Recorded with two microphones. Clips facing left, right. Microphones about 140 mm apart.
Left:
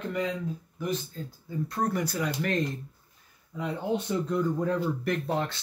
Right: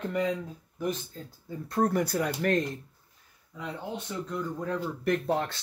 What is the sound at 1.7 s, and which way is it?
Speech, 50° right (ahead or behind).